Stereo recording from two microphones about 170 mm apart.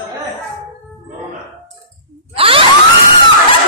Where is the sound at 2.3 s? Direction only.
30° right (ahead or behind).